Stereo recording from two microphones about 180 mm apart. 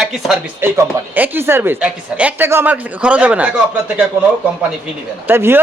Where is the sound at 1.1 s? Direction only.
10° right (ahead or behind).